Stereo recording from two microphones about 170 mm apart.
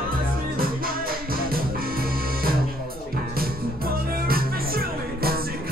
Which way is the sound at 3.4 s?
60° right (ahead or behind).